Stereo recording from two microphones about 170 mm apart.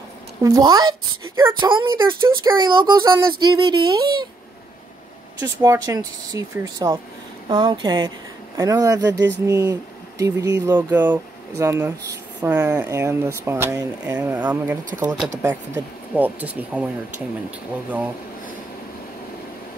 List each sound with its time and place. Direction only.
0.4 s speech: 20° right (ahead or behind)
5.4 s speech: 20° right (ahead or behind)
9.0 s speech: 90° right
9.5 s speech: 20° right (ahead or behind)